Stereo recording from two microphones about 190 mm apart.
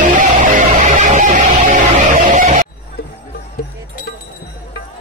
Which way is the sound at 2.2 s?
40° right (ahead or behind).